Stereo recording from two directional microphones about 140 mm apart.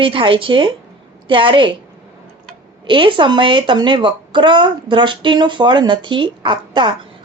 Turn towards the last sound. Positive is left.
turn(degrees=-35)  # may be behind; listen again after turning